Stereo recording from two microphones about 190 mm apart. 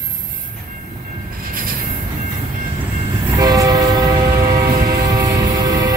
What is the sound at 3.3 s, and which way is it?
Train, 20° right (ahead or behind).